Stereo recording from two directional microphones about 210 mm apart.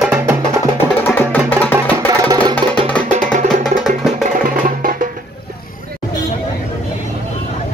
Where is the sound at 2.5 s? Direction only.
5° left (ahead or behind).